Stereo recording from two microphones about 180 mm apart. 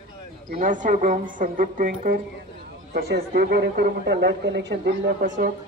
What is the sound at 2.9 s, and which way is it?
A man's voice, 60° right (ahead or behind).